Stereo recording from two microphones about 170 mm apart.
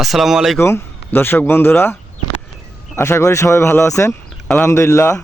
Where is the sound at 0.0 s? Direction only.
Centre (ahead or behind).